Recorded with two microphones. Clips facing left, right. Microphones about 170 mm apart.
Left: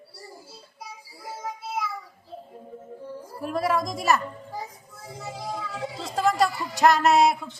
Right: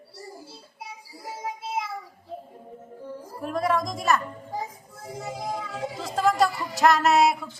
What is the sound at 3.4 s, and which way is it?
Speech, 5° left (ahead or behind).